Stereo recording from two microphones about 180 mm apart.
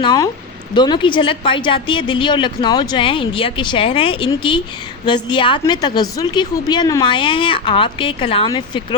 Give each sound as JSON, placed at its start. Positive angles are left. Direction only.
{"t": 0.0, "sound": "a woman's voice", "side_deg": 25}